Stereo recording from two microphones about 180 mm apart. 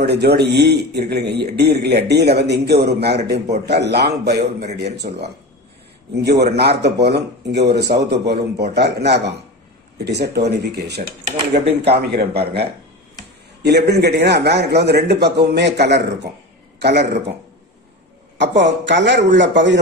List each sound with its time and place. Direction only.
0.0 s a man's voice: 65° right (ahead or behind)
6.4 s a man's voice: 65° right (ahead or behind)
18.4 s speech: 80° right